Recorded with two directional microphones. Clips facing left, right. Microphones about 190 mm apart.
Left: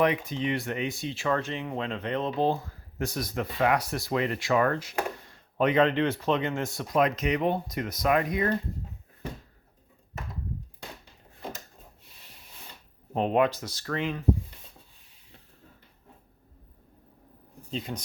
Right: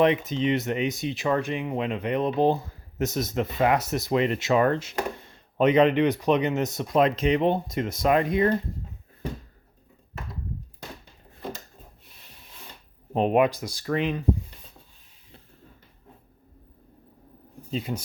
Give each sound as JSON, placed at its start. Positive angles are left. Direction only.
{"t": 0.0, "sound": "speech", "side_deg": -25}
{"t": 13.1, "sound": "speech", "side_deg": -15}
{"t": 17.7, "sound": "speech", "side_deg": -5}